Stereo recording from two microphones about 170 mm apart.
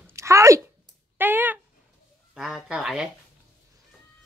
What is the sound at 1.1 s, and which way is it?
Speech, 10° right (ahead or behind).